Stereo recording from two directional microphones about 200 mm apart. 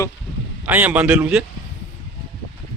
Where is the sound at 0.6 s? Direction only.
10° right (ahead or behind).